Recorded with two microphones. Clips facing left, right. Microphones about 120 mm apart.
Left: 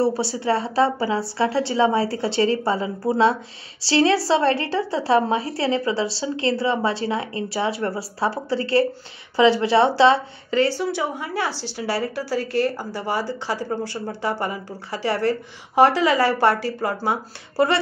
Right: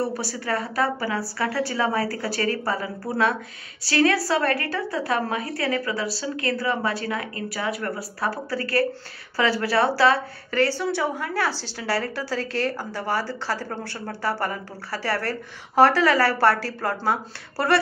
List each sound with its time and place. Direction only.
0.0 s a woman's voice: 25° left (ahead or behind)